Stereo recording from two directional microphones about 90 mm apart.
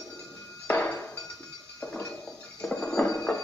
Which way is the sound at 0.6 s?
15° left (ahead or behind).